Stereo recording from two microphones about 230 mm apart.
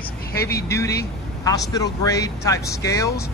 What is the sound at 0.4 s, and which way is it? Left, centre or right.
Speech, left.